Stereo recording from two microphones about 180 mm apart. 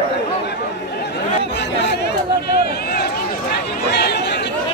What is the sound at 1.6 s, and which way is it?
Chatter, 70° left (ahead or behind).